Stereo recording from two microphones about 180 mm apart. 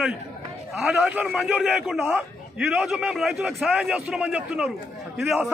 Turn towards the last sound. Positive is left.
turn(degrees=-10)  # may be behind; listen again after turning